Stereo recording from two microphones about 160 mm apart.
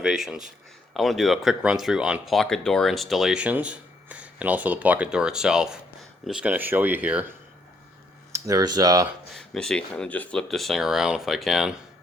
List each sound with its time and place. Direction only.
0.0 s speech: 5° right (ahead or behind)
8.3 s speech: 20° right (ahead or behind)
9.3 s speech: 5° left (ahead or behind)